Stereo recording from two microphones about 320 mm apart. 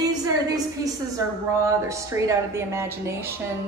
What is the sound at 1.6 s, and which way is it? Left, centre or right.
A woman's voice, centre.